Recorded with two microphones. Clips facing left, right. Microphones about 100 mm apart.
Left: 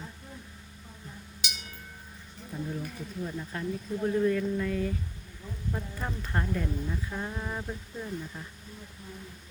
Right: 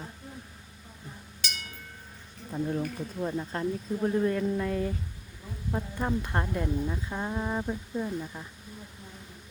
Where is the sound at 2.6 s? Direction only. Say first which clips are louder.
Right 6 dB; 50° right (ahead or behind).